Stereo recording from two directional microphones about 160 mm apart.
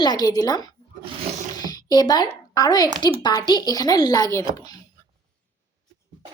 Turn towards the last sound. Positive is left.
turn(degrees=20)  # may be behind; listen again after turning